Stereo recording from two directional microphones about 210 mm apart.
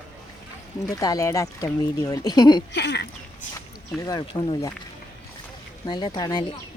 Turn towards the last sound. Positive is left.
turn(degrees=20)  # may be behind; listen again after turning